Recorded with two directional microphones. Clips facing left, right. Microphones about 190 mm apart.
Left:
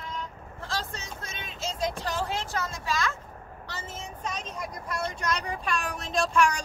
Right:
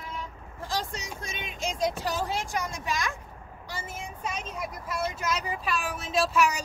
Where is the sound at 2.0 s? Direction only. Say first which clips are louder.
Right 1 dB; 10° right (ahead or behind).